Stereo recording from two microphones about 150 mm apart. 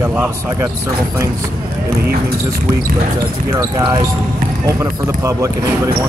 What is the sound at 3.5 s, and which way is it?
Speech, 25° right (ahead or behind).